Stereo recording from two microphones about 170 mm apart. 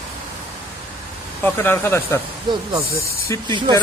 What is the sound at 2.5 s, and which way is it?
Speech, 25° right (ahead or behind).